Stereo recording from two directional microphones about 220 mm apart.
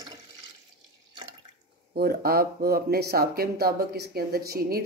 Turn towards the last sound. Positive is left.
turn(degrees=-45)  # may be behind; listen again after turning